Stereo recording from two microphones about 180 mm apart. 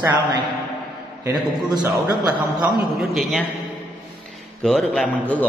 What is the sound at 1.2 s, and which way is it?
Speech, 20° right (ahead or behind).